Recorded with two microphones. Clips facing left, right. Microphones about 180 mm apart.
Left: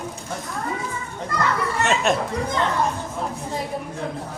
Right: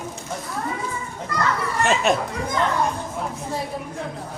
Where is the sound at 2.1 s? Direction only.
Centre (ahead or behind).